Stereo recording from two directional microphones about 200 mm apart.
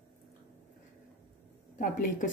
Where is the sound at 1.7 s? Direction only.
40° left (ahead or behind).